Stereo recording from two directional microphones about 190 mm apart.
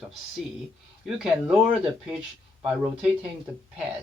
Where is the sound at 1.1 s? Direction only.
5° right (ahead or behind).